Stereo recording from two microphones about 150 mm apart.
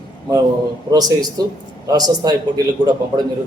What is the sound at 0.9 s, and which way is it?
Speech, 25° right (ahead or behind).